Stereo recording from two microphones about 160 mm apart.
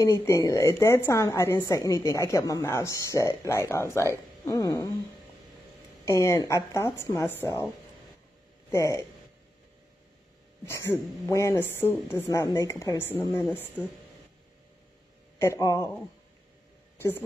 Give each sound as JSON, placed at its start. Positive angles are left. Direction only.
{"t": 0.0, "sound": "a woman's voice", "side_deg": 15}
{"t": 6.0, "sound": "speech", "side_deg": 20}
{"t": 8.7, "sound": "a woman's voice", "side_deg": 20}
{"t": 10.6, "sound": "speech", "side_deg": 15}
{"t": 15.3, "sound": "speech", "side_deg": 15}